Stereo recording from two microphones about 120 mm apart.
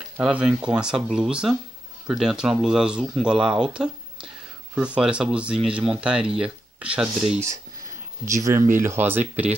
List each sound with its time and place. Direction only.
0.2 s speech: 5° right (ahead or behind)
8.3 s speech: 25° right (ahead or behind)